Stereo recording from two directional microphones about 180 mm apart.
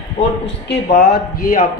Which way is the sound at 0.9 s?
55° left (ahead or behind).